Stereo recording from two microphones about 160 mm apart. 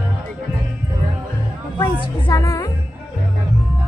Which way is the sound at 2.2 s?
20° left (ahead or behind).